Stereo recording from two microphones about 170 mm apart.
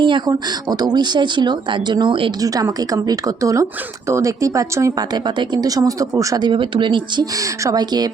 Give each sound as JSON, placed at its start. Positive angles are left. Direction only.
{"t": 0.0, "sound": "speech", "side_deg": -25}